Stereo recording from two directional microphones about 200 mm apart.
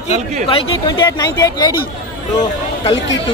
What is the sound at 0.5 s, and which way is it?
Speech, 20° left (ahead or behind).